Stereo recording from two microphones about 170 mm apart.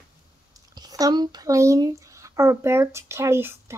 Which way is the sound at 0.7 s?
20° right (ahead or behind).